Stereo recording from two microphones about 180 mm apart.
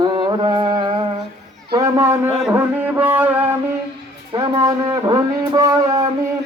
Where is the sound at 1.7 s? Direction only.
20° right (ahead or behind).